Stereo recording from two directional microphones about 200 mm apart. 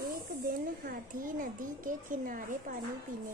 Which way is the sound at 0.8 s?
45° right (ahead or behind).